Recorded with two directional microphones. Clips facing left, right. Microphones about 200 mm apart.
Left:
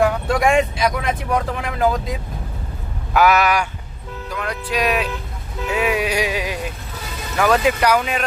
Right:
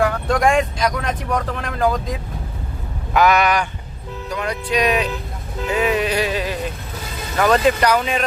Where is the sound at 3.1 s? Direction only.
5° left (ahead or behind).